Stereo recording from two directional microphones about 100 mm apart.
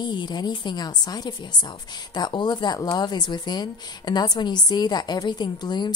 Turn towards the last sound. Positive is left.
turn(degrees=45)  # may be behind; listen again after turning